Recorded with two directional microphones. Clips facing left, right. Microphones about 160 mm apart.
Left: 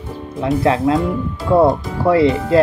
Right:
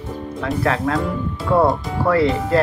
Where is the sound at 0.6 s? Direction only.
20° left (ahead or behind).